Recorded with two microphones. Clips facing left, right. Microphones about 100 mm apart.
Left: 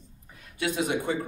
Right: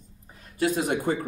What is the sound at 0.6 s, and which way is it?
Speech, 45° right (ahead or behind).